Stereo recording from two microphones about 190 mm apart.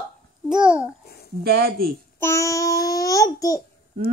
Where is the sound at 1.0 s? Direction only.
55° left (ahead or behind).